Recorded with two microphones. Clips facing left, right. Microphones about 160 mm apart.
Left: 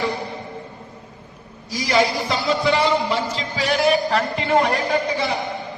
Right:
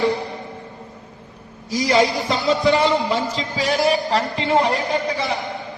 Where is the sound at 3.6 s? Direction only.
35° right (ahead or behind).